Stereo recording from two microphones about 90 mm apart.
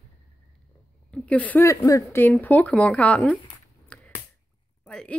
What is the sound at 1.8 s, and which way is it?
Speech, 40° left (ahead or behind).